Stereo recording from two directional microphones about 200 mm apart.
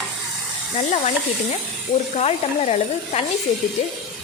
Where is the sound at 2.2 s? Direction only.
30° left (ahead or behind).